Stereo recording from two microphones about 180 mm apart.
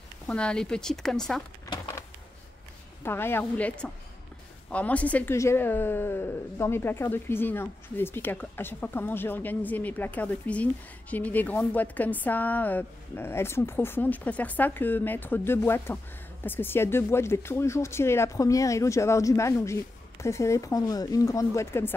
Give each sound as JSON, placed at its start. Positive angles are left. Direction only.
{"t": 0.3, "sound": "speech", "side_deg": 5}
{"t": 3.0, "sound": "speech", "side_deg": 15}